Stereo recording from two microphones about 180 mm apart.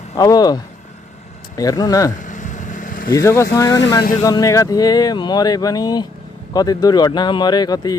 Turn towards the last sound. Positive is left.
turn(degrees=20)  # may be behind; listen again after turning